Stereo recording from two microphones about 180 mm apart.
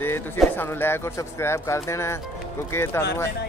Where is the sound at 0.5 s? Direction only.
10° left (ahead or behind).